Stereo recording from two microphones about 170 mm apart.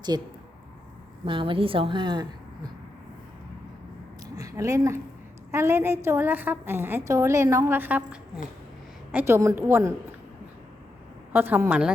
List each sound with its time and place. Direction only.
0.1 s a woman's voice: 20° right (ahead or behind)
4.4 s a woman's voice: 20° right (ahead or behind)
11.3 s a woman's voice: 10° right (ahead or behind)